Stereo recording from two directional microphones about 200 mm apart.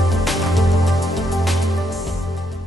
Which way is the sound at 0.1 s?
Centre (ahead or behind).